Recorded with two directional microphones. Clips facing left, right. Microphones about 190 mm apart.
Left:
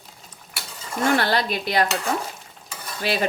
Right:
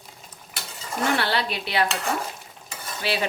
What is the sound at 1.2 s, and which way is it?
Speech, 45° left (ahead or behind).